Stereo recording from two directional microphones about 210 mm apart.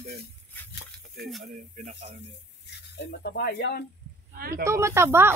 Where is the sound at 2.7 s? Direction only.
50° left (ahead or behind).